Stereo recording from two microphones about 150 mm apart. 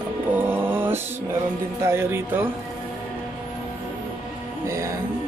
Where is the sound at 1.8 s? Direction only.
15° right (ahead or behind).